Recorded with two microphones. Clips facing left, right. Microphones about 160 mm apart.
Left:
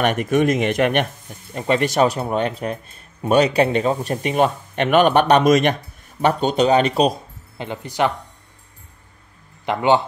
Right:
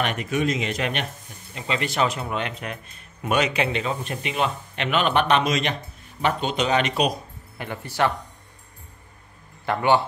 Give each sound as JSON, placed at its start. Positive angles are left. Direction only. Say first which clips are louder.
{"t": 0.0, "sound": "speech", "louder": "left 7 dB", "side_deg": 50}
{"t": 6.2, "sound": "speech", "louder": "left 7 dB", "side_deg": 40}
{"t": 9.7, "sound": "speech", "louder": "left 3 dB", "side_deg": 20}